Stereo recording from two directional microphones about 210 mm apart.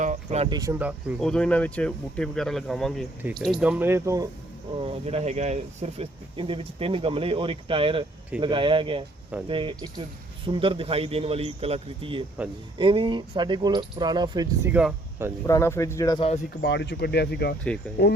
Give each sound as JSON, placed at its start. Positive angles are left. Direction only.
{"t": 0.0, "sound": "cricket", "side_deg": -35}
{"t": 0.5, "sound": "speech", "side_deg": -15}
{"t": 4.8, "sound": "speech", "side_deg": -30}
{"t": 14.7, "sound": "speech", "side_deg": -5}
{"t": 15.4, "sound": "speech", "side_deg": 15}
{"t": 16.6, "sound": "speech", "side_deg": 50}